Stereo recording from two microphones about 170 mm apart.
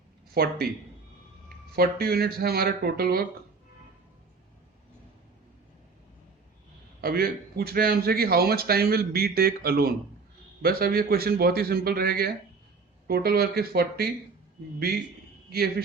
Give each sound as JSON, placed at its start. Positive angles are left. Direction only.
{"t": 0.3, "sound": "a man's voice", "side_deg": -65}
{"t": 1.7, "sound": "a man's voice", "side_deg": -65}
{"t": 7.0, "sound": "a man's voice", "side_deg": -65}